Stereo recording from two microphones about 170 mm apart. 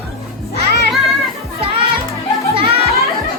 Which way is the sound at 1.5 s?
35° right (ahead or behind).